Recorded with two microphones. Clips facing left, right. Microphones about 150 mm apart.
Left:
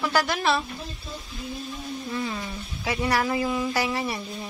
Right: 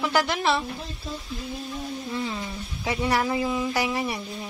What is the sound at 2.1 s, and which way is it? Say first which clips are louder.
Speech: left 1 dB; 20° right (ahead or behind).